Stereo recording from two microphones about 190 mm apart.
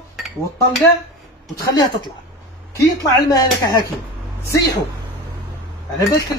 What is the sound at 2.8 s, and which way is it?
Speech, 20° left (ahead or behind).